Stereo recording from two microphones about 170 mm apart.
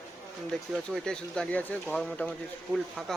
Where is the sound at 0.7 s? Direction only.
5° left (ahead or behind).